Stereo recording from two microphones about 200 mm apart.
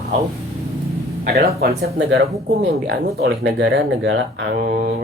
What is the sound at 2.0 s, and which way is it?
Speech, 60° right (ahead or behind).